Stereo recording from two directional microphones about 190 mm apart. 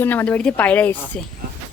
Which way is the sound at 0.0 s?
10° left (ahead or behind).